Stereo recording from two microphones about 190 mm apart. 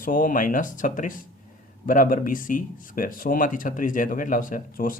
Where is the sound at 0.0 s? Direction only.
45° left (ahead or behind).